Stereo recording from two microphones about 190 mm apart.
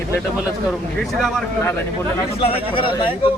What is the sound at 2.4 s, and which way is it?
Speech, 30° left (ahead or behind).